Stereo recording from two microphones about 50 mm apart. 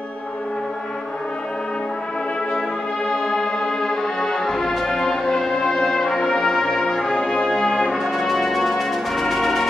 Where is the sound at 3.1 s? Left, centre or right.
Centre.